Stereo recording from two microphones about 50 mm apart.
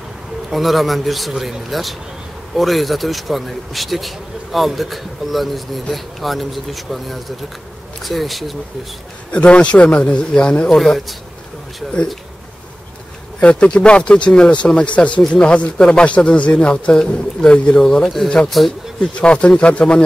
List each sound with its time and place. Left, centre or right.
0.5 s a man's voice: centre
9.3 s speech: left
10.7 s a man's voice: centre
13.4 s speech: left
17.7 s a man's voice: centre
18.9 s speech: left